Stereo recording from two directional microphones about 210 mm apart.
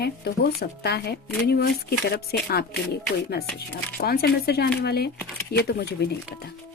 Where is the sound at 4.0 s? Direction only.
45° left (ahead or behind).